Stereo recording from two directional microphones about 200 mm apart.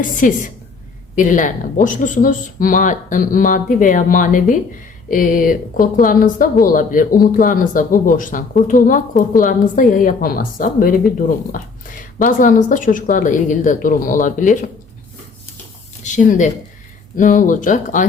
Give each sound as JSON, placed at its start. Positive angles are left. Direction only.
{"t": 0.0, "sound": "speech", "side_deg": 40}
{"t": 16.0, "sound": "speech", "side_deg": 35}